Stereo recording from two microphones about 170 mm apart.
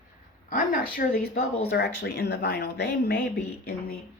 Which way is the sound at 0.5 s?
55° left (ahead or behind).